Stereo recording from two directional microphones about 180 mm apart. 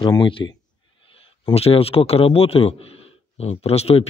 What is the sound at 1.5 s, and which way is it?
A man's voice, 35° left (ahead or behind).